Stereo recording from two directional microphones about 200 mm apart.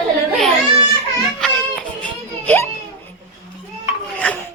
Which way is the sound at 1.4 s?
5° left (ahead or behind).